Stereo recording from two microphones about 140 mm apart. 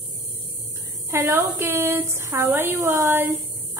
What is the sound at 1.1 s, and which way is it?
A woman's voice, 15° right (ahead or behind).